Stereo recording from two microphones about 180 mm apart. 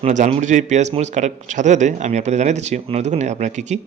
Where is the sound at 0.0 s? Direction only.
40° right (ahead or behind).